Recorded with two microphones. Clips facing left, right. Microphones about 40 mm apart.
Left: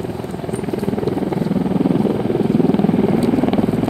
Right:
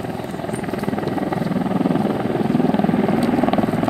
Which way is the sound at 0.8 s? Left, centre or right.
Centre.